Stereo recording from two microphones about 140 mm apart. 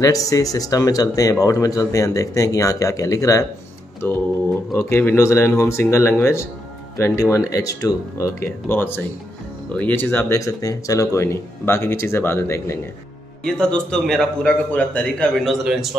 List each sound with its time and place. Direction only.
0.0 s speech: 25° left (ahead or behind)
13.4 s a man's voice: 5° left (ahead or behind)